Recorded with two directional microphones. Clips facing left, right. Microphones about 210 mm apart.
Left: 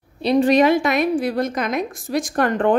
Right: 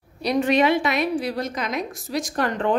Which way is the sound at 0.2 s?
30° left (ahead or behind).